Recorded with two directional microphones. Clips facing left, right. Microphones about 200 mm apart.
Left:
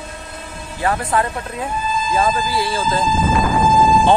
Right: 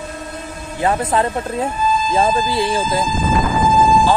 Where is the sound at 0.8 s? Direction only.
20° right (ahead or behind).